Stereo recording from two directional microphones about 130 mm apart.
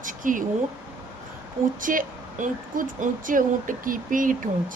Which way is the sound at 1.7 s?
90° right.